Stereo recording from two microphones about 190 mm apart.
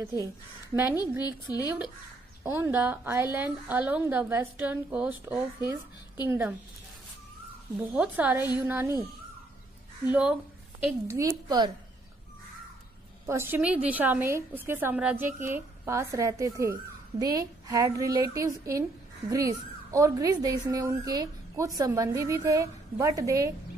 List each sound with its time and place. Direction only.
0.0 s a woman's voice: 15° right (ahead or behind)
2.4 s a woman's voice: 10° right (ahead or behind)
7.8 s a woman's voice: 5° right (ahead or behind)
10.0 s a woman's voice: 5° right (ahead or behind)
13.3 s a woman's voice: 10° right (ahead or behind)